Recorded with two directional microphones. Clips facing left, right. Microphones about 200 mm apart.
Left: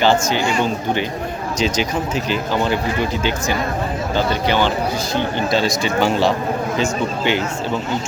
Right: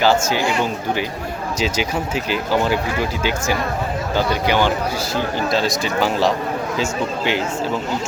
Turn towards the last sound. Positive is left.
turn(degrees=0)  # may be behind; listen again after turning